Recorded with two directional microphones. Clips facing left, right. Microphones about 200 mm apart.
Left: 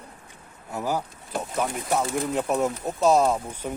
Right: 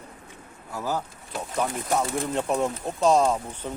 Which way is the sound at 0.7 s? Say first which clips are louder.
Left 2 dB; 15° left (ahead or behind).